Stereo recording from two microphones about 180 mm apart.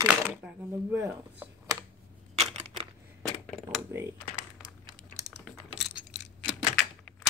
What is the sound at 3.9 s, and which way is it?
Speech, 15° right (ahead or behind).